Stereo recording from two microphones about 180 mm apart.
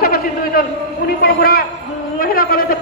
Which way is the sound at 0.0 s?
55° left (ahead or behind).